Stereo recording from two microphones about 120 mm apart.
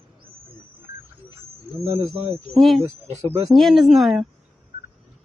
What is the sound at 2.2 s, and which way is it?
Speech, 55° right (ahead or behind).